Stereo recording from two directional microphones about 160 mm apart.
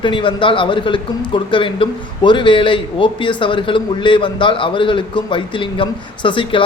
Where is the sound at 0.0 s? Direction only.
30° left (ahead or behind).